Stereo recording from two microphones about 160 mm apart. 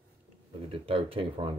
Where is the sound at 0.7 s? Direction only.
35° right (ahead or behind).